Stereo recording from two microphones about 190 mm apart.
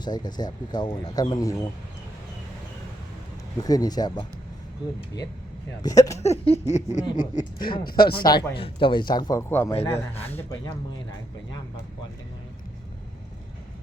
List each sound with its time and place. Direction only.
0.0 s speech: 20° left (ahead or behind)
3.6 s speech: 20° left (ahead or behind)
5.8 s a man's voice: 20° left (ahead or behind)
6.1 s a sound: 35° left (ahead or behind)
7.2 s speech: 45° left (ahead or behind)
8.2 s a man's voice: 20° left (ahead or behind)